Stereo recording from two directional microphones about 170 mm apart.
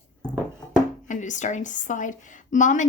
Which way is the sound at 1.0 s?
45° left (ahead or behind).